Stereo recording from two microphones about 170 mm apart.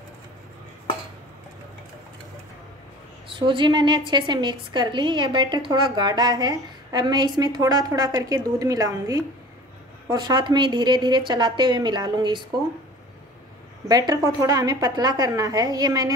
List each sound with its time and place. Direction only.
3.3 s a woman's voice: 30° right (ahead or behind)
13.8 s a woman's voice: 20° right (ahead or behind)